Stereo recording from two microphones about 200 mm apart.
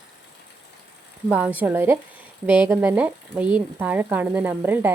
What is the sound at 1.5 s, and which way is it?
Speech, 10° right (ahead or behind).